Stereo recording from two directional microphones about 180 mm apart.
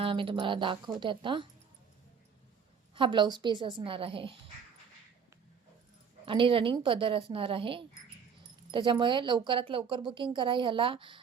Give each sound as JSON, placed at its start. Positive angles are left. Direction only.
{"t": 0.0, "sound": "speech", "side_deg": -30}
{"t": 2.9, "sound": "speech", "side_deg": -25}
{"t": 6.2, "sound": "speech", "side_deg": -30}